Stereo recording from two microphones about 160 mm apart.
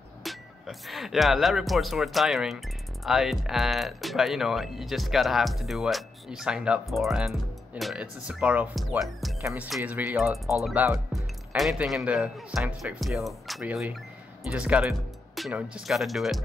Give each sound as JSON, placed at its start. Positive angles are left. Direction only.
{"t": 0.2, "sound": "speech", "side_deg": 0}
{"t": 9.4, "sound": "speech", "side_deg": -20}